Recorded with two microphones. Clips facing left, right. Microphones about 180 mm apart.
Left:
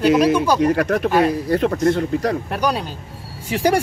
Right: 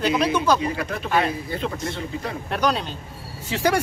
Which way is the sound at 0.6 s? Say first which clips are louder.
Left 10 dB; 75° left (ahead or behind).